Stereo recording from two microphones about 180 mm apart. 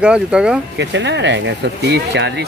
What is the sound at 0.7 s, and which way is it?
Speech, 75° right (ahead or behind).